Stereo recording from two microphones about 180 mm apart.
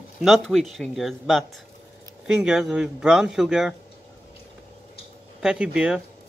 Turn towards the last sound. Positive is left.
turn(degrees=-5)  # may be behind; listen again after turning